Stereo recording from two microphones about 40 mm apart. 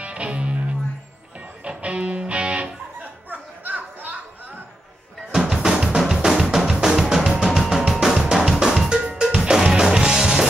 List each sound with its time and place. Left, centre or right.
0.0 s music: right
3.0 s a sound: right
5.3 s music: centre
5.9 s drum: centre
7.3 s music: right
7.9 s drum: centre
9.4 s music: centre